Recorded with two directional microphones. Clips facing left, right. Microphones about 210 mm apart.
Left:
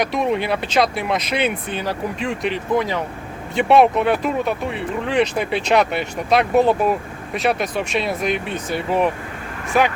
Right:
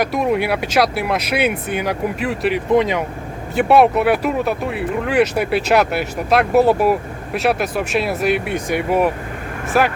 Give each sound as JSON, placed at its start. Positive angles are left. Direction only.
{"t": 0.0, "sound": "speech", "side_deg": -5}
{"t": 2.7, "sound": "speech", "side_deg": -20}
{"t": 3.5, "sound": "speech", "side_deg": -5}